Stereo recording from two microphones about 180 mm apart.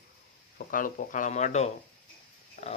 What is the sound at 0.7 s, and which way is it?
Speech, 50° left (ahead or behind).